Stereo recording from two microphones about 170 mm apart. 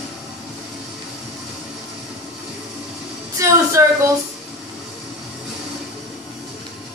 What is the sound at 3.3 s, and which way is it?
Speech, 15° right (ahead or behind).